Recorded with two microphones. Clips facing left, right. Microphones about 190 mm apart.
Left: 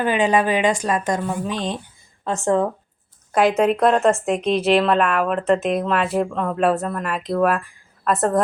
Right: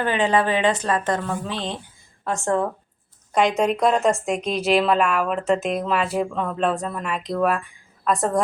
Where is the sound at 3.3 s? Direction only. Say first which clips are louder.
Left 3 dB; 5° left (ahead or behind).